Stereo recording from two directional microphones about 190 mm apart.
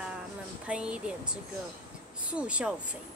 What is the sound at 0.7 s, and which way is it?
Speech, 5° right (ahead or behind).